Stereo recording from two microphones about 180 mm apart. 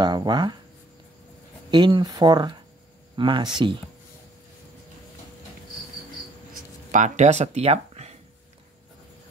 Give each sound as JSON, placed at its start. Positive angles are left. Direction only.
{"t": 0.0, "sound": "speech", "side_deg": -25}
{"t": 1.7, "sound": "speech", "side_deg": -25}
{"t": 6.9, "sound": "speech", "side_deg": -40}